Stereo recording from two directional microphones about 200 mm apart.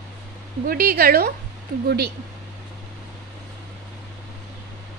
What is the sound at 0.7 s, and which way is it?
Speech, 45° right (ahead or behind).